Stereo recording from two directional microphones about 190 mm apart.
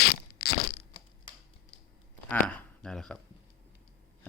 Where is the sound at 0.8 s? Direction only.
25° left (ahead or behind).